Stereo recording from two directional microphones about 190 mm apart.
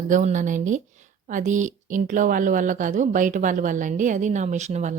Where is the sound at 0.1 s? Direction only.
40° right (ahead or behind).